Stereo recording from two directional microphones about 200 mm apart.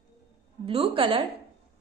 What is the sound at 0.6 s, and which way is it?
Speech, 30° right (ahead or behind).